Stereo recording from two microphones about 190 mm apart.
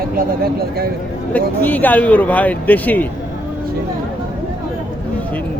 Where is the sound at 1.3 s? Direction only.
10° left (ahead or behind).